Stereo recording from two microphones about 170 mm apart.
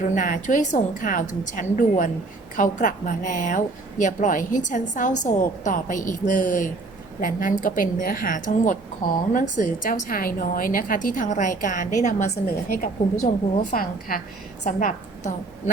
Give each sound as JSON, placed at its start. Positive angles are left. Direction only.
{"t": 0.1, "sound": "a woman's voice", "side_deg": 50}